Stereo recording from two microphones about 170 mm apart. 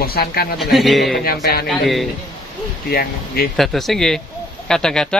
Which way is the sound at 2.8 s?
65° left (ahead or behind).